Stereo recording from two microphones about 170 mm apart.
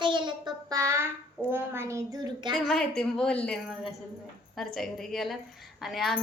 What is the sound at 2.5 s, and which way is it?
A woman's voice, 5° left (ahead or behind).